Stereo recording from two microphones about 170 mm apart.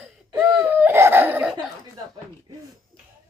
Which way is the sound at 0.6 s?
10° right (ahead or behind).